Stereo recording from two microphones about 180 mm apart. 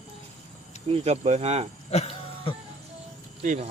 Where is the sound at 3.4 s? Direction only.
45° right (ahead or behind).